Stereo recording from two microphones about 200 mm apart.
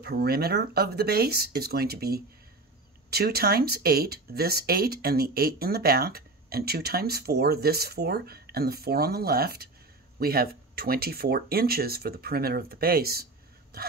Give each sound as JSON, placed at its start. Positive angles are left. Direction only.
{"t": 0.0, "sound": "speech", "side_deg": -50}